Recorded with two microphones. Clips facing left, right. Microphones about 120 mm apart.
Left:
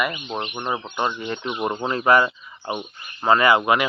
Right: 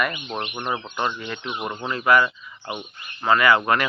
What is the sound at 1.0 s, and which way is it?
Speech, 25° left (ahead or behind).